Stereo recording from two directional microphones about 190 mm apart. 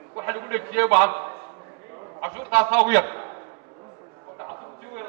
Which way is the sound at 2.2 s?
15° right (ahead or behind).